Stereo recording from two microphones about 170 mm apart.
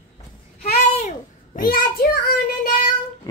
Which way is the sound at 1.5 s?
60° left (ahead or behind).